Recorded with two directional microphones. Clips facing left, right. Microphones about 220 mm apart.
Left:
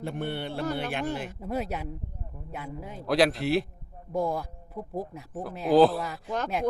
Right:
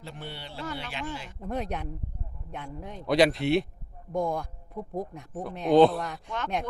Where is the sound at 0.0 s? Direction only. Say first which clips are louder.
Left 9 dB; 55° left (ahead or behind).